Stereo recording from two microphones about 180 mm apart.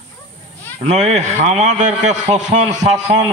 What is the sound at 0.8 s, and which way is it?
A man's voice, 40° right (ahead or behind).